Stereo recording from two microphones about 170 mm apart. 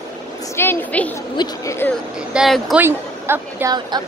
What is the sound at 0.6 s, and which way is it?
Speech, 10° left (ahead or behind).